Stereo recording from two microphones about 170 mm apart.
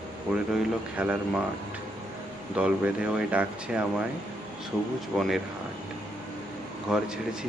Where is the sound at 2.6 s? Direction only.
5° right (ahead or behind).